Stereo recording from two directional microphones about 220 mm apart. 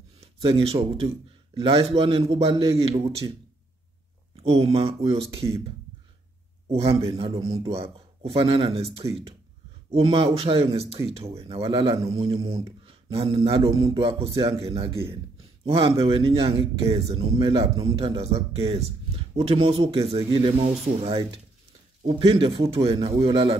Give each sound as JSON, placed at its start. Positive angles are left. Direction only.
{"t": 0.2, "sound": "speech", "side_deg": -25}
{"t": 4.4, "sound": "speech", "side_deg": -25}
{"t": 6.7, "sound": "speech", "side_deg": -25}